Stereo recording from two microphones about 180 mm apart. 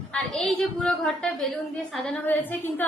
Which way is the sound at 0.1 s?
5° left (ahead or behind).